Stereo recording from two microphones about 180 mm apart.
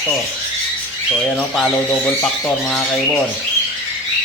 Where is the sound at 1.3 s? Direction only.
Centre (ahead or behind).